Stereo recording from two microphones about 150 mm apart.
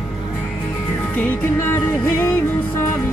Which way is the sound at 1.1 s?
10° left (ahead or behind).